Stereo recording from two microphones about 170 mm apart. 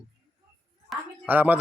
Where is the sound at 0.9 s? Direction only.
5° right (ahead or behind).